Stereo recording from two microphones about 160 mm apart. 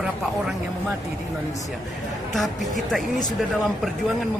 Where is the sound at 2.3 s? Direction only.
Centre (ahead or behind).